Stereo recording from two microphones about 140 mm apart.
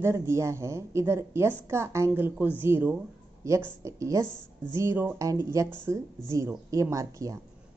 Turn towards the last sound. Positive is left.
turn(degrees=-20)  # may be behind; listen again after turning